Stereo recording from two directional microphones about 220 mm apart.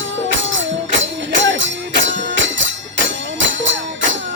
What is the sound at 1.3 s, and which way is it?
Music, 55° right (ahead or behind).